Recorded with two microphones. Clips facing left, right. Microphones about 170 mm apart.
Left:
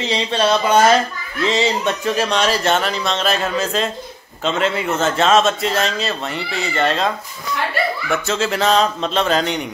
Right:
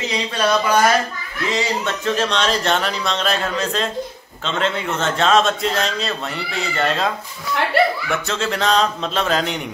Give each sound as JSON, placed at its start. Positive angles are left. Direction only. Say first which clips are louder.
{"t": 0.1, "sound": "speech", "louder": "left 2 dB", "side_deg": 25}
{"t": 2.0, "sound": "a man's voice", "louder": "even", "side_deg": 10}
{"t": 8.1, "sound": "a man's voice", "louder": "left 3 dB", "side_deg": 5}